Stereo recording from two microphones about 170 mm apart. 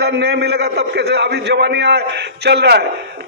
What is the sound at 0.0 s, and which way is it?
A man's voice, 75° right (ahead or behind).